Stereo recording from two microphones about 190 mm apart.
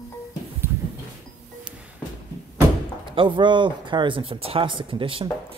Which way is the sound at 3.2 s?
25° right (ahead or behind).